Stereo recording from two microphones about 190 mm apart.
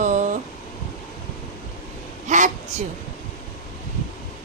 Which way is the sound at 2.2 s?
40° right (ahead or behind).